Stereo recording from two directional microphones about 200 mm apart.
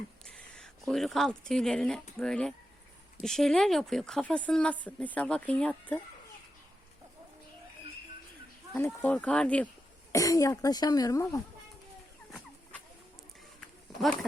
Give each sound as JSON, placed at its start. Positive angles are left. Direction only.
{"t": 0.5, "sound": "a woman's voice", "side_deg": 0}
{"t": 9.0, "sound": "speech", "side_deg": 5}
{"t": 10.1, "sound": "speech", "side_deg": 15}
{"t": 14.0, "sound": "a woman's voice", "side_deg": 0}